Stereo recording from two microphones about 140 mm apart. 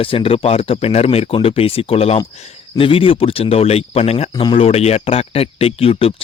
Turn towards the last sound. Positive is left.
turn(degrees=45)  # may be behind; listen again after turning